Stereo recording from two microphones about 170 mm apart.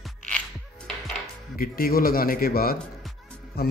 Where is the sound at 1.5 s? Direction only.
60° left (ahead or behind).